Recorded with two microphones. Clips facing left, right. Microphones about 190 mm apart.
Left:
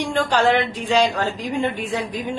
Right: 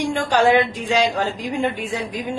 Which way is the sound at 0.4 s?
10° right (ahead or behind).